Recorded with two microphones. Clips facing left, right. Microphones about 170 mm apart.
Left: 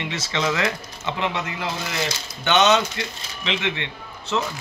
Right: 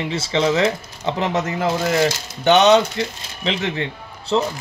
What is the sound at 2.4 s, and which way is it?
Speech, 35° right (ahead or behind).